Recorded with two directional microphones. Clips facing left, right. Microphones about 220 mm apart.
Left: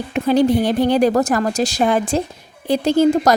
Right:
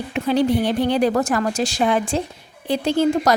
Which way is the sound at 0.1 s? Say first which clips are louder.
Left 4 dB; 45° left (ahead or behind).